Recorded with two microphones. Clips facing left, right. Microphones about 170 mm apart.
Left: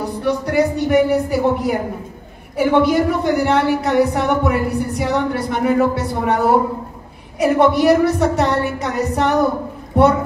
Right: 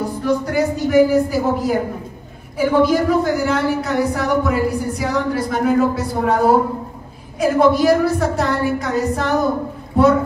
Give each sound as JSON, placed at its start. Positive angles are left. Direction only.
{"t": 0.1, "sound": "a man's voice", "side_deg": 65}